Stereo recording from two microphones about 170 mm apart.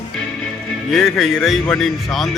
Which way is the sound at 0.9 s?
Centre (ahead or behind).